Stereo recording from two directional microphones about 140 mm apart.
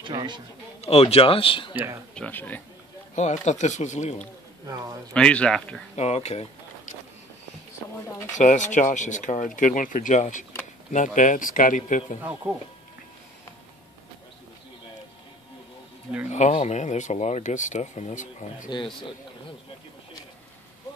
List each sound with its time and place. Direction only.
0.0 s a man's voice: 30° right (ahead or behind)
0.7 s speech: 45° left (ahead or behind)
2.1 s speech: 10° left (ahead or behind)
3.2 s speech: 55° left (ahead or behind)
4.6 s speech: 25° right (ahead or behind)
5.1 s speech: 5° left (ahead or behind)
5.9 s speech: 50° left (ahead or behind)
8.4 s speech: 60° left (ahead or behind)
12.2 s speech: 15° right (ahead or behind)
16.3 s speech: 55° left (ahead or behind)